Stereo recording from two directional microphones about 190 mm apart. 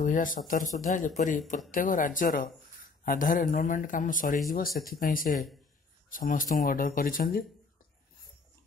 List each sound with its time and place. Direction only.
0.0 s speech: 45° left (ahead or behind)